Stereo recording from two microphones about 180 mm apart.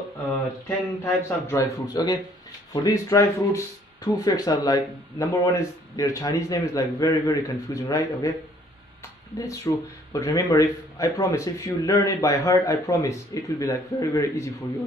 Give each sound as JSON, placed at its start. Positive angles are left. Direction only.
{"t": 0.3, "sound": "speech", "side_deg": 10}
{"t": 9.4, "sound": "speech", "side_deg": 20}